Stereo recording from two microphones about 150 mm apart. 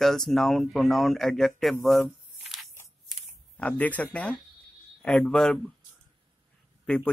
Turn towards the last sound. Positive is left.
turn(degrees=5)  # may be behind; listen again after turning